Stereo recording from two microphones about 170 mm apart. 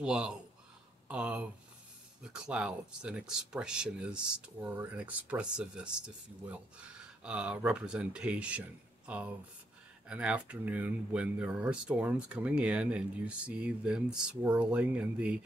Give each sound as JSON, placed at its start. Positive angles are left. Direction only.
{"t": 0.0, "sound": "speech", "side_deg": -5}